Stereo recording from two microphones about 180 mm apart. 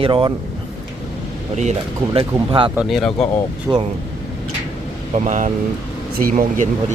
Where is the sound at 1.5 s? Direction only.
40° right (ahead or behind).